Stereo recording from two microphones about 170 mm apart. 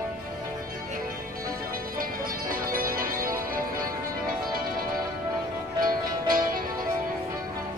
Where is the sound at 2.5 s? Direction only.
60° right (ahead or behind).